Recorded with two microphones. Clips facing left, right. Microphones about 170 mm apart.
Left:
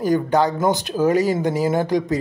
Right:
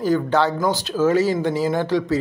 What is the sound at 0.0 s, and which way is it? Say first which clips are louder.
Speech: left 1 dB; 15° left (ahead or behind).